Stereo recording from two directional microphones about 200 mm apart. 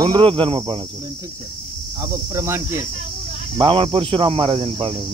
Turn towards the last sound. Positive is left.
turn(degrees=-25)  # may be behind; listen again after turning